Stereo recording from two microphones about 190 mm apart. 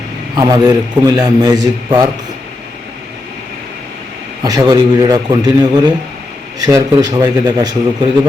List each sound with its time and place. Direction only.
0.3 s a man's voice: 20° right (ahead or behind)
4.4 s a man's voice: 20° right (ahead or behind)